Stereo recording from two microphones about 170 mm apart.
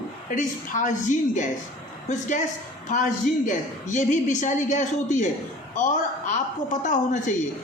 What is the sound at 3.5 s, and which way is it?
A woman's voice, 45° left (ahead or behind).